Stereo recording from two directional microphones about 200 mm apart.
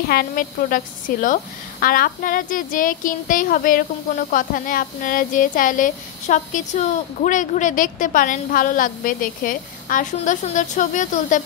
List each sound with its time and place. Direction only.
0.1 s a woman's voice: 45° left (ahead or behind)